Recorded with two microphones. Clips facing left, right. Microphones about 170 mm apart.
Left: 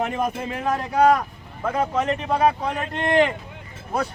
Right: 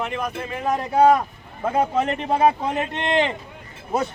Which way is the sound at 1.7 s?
30° right (ahead or behind).